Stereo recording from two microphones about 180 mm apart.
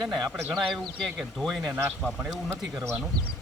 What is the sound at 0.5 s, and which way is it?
Speech, centre (ahead or behind).